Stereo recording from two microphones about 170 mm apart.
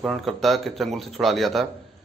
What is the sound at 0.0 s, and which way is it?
Speech, centre (ahead or behind).